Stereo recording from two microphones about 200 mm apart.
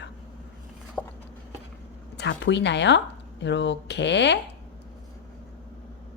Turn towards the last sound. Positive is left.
turn(degrees=60)  # may be behind; listen again after turning